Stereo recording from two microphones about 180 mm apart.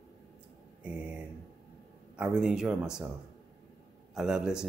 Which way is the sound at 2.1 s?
5° right (ahead or behind).